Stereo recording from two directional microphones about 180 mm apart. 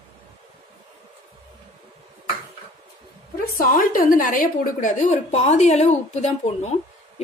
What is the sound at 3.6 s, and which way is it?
A woman's voice, 50° left (ahead or behind).